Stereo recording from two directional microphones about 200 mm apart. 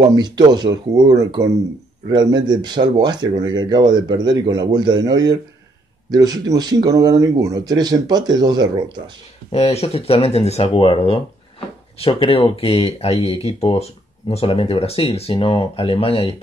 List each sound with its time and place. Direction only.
0.0 s speech: 20° right (ahead or behind)
9.5 s speech: 30° left (ahead or behind)